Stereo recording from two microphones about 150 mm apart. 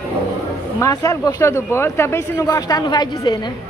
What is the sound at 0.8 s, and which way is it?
Speech, 25° left (ahead or behind).